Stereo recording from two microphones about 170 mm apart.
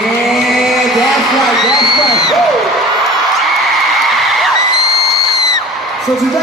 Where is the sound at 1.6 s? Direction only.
25° left (ahead or behind).